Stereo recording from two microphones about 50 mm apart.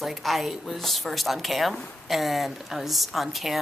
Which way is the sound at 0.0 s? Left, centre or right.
Centre.